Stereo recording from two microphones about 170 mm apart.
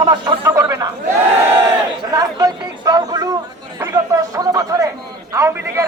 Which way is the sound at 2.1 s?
20° right (ahead or behind).